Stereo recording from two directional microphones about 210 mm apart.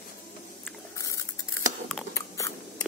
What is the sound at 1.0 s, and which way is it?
Keys jangling, 15° left (ahead or behind).